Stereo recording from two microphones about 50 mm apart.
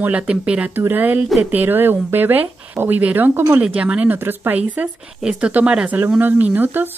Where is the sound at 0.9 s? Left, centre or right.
Right.